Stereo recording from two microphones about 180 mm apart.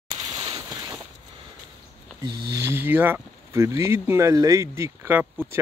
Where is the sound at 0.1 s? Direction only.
25° right (ahead or behind).